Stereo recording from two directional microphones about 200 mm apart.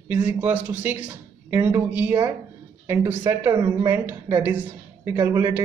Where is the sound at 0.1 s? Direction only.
5° right (ahead or behind).